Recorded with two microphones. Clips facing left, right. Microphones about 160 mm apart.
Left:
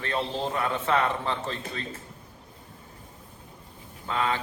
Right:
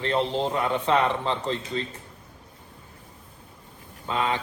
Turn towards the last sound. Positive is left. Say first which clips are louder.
# right 1 dB
turn(degrees=-20)  # may be behind; listen again after turning